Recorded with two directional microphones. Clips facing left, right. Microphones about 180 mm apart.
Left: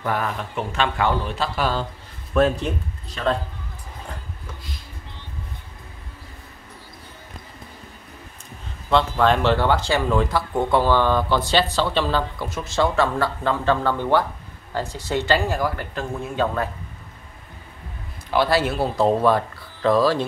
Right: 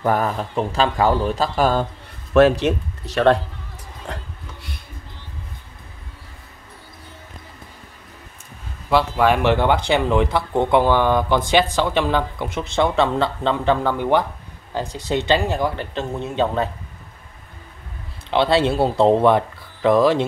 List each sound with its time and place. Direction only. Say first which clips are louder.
0.0 s a man's voice: right 5 dB; 40° right (ahead or behind)
2.3 s speech: right 5 dB; 80° right
4.1 s wood: right 6 dB; 85° right
8.9 s speech: right 1 dB; 10° right (ahead or behind)
18.3 s speech: right 3 dB; 25° right (ahead or behind)